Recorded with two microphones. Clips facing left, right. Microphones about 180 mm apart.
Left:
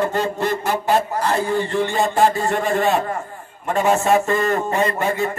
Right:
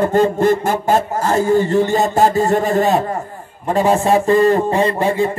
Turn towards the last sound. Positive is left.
turn(degrees=-30)  # may be behind; listen again after turning